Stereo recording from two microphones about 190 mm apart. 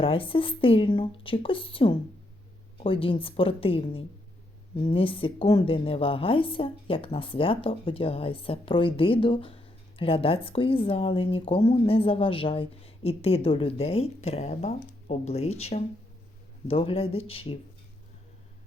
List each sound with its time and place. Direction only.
0.0 s speech: 30° left (ahead or behind)